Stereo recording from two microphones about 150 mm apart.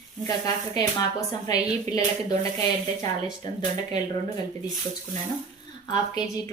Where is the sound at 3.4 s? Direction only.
30° left (ahead or behind).